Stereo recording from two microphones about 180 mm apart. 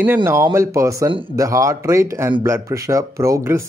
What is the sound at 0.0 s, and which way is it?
Speech, 10° right (ahead or behind).